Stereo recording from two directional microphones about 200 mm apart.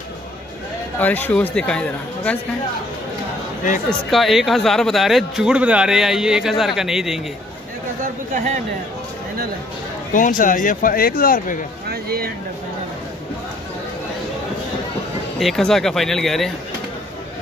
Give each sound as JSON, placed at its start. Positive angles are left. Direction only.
{"t": 0.9, "sound": "speech", "side_deg": 10}
{"t": 4.1, "sound": "speech", "side_deg": 0}
{"t": 8.0, "sound": "speech", "side_deg": -40}
{"t": 10.1, "sound": "speech", "side_deg": 40}
{"t": 11.9, "sound": "speech", "side_deg": -50}
{"t": 15.3, "sound": "speech", "side_deg": 0}